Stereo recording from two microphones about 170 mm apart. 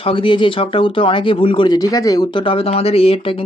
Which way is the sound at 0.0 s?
30° left (ahead or behind).